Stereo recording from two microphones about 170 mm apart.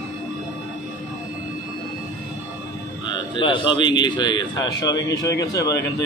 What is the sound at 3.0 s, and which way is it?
Speech, 25° left (ahead or behind).